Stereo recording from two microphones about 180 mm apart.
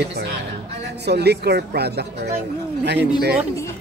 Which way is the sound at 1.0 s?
65° right (ahead or behind).